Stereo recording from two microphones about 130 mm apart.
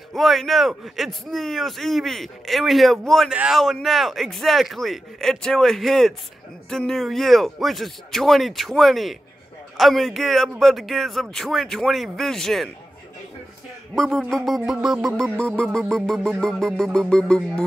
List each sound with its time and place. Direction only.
0.1 s a man's voice: centre (ahead or behind)
13.9 s a man's voice: 5° left (ahead or behind)
17.1 s music: 5° left (ahead or behind)